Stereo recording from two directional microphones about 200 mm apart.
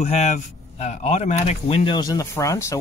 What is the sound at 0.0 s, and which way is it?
Speech, 35° left (ahead or behind).